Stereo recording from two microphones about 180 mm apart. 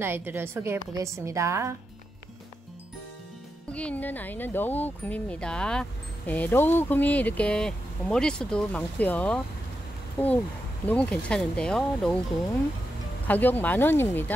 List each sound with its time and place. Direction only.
0.0 s a woman's voice: 10° right (ahead or behind)
3.7 s speech: 10° left (ahead or behind)
10.9 s speech: 5° left (ahead or behind)
13.3 s speech: 10° left (ahead or behind)